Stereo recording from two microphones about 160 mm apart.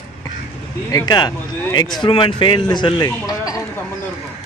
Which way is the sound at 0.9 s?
25° left (ahead or behind).